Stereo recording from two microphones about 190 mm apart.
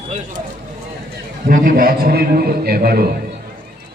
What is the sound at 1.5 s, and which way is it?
A man's voice, 50° right (ahead or behind).